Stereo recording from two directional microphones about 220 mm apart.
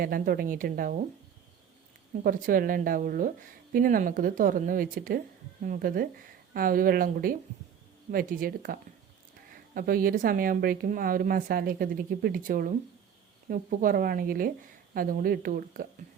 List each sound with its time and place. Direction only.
0.0 s speech: 40° right (ahead or behind)
2.2 s speech: 40° right (ahead or behind)